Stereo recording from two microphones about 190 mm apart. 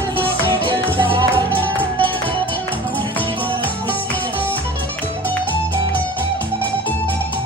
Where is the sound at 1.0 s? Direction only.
25° right (ahead or behind).